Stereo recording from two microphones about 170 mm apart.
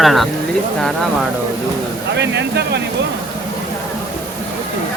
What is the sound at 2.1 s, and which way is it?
Speech, 90° right.